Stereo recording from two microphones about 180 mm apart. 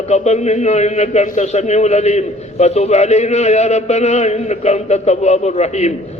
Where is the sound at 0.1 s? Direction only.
40° left (ahead or behind).